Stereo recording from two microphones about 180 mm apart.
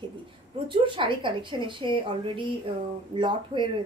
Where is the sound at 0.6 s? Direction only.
30° right (ahead or behind).